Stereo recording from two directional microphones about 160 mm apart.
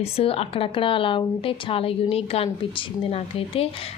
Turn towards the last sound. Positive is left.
turn(degrees=35)  # may be behind; listen again after turning